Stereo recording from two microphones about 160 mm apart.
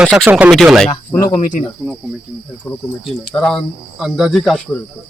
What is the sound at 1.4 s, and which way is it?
Speech, 55° left (ahead or behind).